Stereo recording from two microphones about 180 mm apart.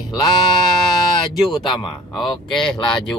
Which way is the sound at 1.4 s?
25° left (ahead or behind).